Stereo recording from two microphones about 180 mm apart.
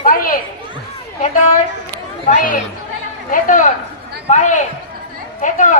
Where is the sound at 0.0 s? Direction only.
50° left (ahead or behind).